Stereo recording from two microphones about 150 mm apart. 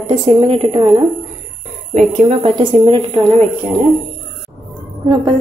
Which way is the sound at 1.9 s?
50° right (ahead or behind).